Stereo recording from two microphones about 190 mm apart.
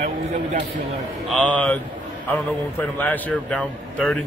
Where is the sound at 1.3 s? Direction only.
5° left (ahead or behind).